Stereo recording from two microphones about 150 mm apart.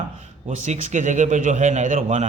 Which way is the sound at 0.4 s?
50° right (ahead or behind).